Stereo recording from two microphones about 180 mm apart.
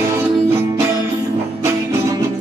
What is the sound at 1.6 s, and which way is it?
Music, 15° right (ahead or behind).